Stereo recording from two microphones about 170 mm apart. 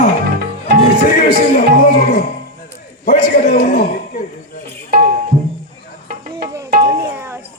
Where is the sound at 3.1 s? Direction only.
45° left (ahead or behind).